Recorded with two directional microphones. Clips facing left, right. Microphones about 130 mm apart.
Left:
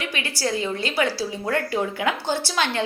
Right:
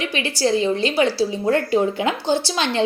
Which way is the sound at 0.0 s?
25° right (ahead or behind).